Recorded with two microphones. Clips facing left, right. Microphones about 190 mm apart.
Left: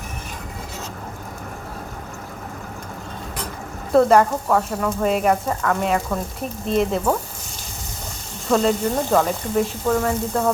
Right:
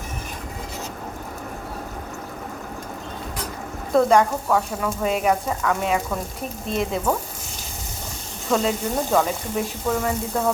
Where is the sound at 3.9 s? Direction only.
5° left (ahead or behind).